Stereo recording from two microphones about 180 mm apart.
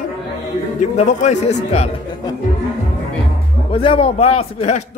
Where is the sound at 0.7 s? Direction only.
40° left (ahead or behind).